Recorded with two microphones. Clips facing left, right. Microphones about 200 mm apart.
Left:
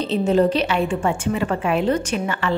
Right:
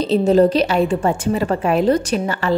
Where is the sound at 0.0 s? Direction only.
40° right (ahead or behind).